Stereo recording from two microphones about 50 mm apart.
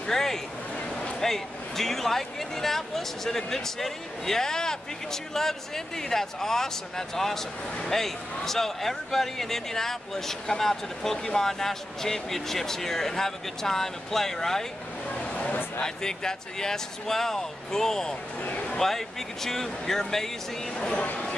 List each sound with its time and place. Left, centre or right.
0.0 s speech: centre
15.2 s a sound: left
15.8 s speech: centre
18.4 s speech: left
18.8 s speech: centre
21.0 s speech: left